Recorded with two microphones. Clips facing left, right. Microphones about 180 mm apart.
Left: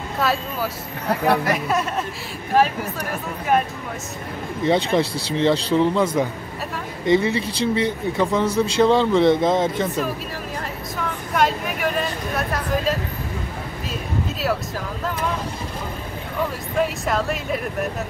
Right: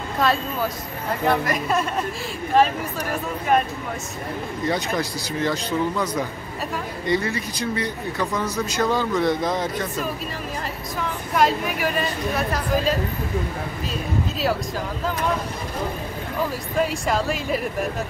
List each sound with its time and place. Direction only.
0.2 s a woman's voice: 5° left (ahead or behind)
4.6 s speech: 25° left (ahead or behind)
11.3 s a woman's voice: centre (ahead or behind)
16.7 s a woman's voice: centre (ahead or behind)